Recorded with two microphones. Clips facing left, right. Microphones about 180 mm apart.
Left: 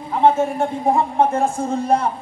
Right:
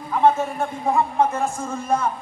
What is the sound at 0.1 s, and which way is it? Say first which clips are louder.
A man's voice: left 2 dB; 25° left (ahead or behind).